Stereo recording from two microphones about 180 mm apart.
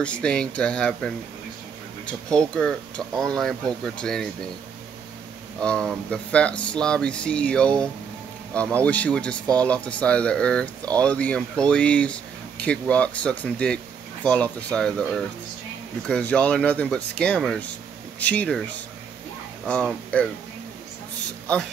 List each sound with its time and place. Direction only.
0.0 s speech: 5° left (ahead or behind)
5.6 s speech: 5° left (ahead or behind)